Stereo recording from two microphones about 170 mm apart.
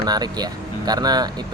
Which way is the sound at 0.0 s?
25° right (ahead or behind).